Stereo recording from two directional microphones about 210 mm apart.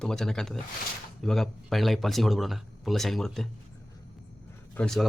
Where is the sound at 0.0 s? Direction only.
5° left (ahead or behind).